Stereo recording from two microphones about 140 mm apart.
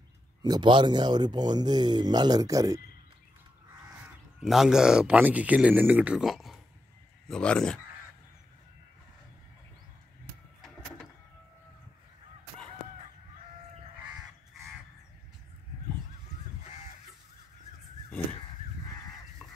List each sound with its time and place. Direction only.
0.4 s speech: 35° right (ahead or behind)
4.4 s speech: centre (ahead or behind)